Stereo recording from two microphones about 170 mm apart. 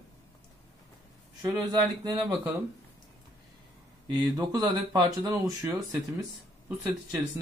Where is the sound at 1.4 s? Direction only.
20° right (ahead or behind).